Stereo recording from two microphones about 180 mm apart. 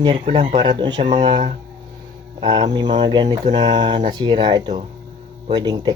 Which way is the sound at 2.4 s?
25° right (ahead or behind).